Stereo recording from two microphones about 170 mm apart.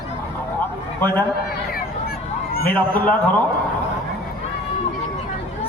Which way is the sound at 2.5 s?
60° left (ahead or behind).